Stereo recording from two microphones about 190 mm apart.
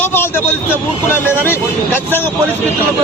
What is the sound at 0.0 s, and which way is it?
Vehicle, 10° left (ahead or behind).